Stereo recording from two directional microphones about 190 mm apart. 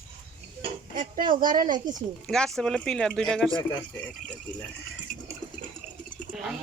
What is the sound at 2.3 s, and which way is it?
Speech, 5° left (ahead or behind).